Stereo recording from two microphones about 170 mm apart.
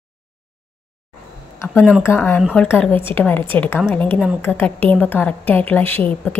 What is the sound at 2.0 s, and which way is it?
A woman's voice, 15° left (ahead or behind).